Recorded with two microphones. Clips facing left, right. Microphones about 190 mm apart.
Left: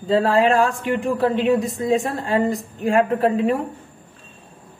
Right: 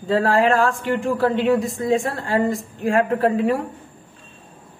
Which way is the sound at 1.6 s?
20° left (ahead or behind).